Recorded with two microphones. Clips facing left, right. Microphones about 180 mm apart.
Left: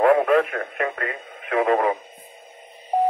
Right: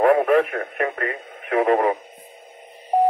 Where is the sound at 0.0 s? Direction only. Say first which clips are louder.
Right 1 dB; 10° right (ahead or behind).